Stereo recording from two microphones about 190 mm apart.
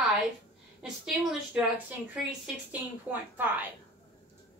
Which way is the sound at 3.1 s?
10° right (ahead or behind).